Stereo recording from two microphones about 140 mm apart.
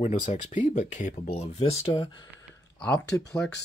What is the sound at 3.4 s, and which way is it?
Speech, 5° left (ahead or behind).